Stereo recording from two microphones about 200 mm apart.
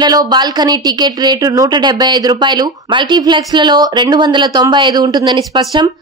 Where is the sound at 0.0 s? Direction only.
20° right (ahead or behind).